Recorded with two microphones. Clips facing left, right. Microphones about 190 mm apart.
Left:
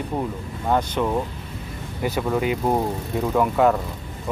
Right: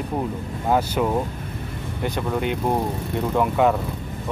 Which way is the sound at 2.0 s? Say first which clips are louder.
Left 2 dB; 5° left (ahead or behind).